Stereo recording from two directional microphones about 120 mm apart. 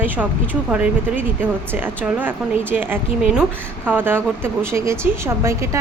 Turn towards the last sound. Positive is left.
turn(degrees=-25)  # may be behind; listen again after turning